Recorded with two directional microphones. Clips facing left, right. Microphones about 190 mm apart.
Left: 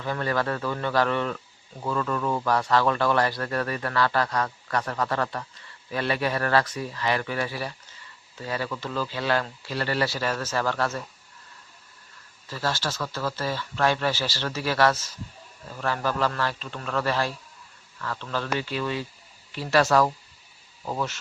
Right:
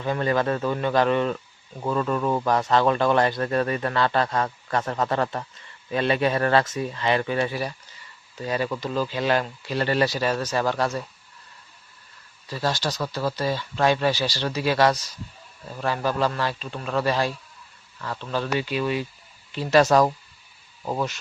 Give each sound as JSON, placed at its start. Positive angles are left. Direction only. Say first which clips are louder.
{"t": 0.0, "sound": "speech", "louder": "right 4 dB", "side_deg": -20}
{"t": 12.5, "sound": "speech", "louder": "right 3 dB", "side_deg": -15}